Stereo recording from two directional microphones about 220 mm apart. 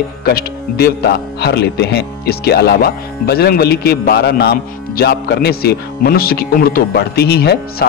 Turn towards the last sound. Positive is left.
turn(degrees=45)  # may be behind; listen again after turning